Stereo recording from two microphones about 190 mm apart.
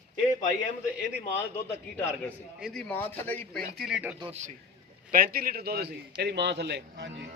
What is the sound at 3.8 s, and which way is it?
Speech, 5° right (ahead or behind).